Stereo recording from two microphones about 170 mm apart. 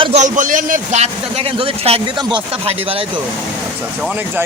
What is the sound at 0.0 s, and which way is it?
Speech, 40° right (ahead or behind).